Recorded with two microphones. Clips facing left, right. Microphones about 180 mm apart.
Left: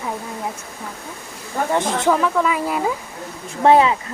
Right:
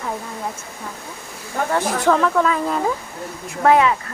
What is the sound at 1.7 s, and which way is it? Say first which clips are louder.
Speech: even; 20° left (ahead or behind).